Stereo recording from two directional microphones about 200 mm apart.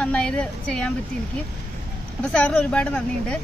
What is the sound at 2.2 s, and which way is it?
A woman's voice, 5° left (ahead or behind).